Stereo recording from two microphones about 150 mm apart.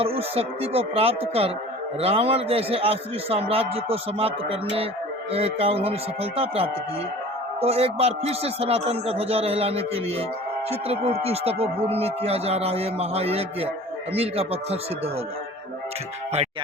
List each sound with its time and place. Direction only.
0.0 s a man's voice: 40° right (ahead or behind)